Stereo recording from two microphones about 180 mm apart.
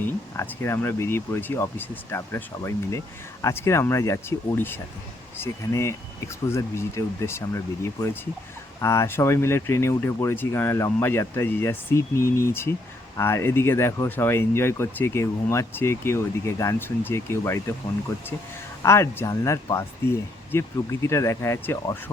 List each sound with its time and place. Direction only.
0.3 s speech: 15° left (ahead or behind)
18.8 s speech: 15° left (ahead or behind)